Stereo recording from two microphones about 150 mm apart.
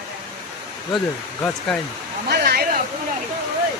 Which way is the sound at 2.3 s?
90° right.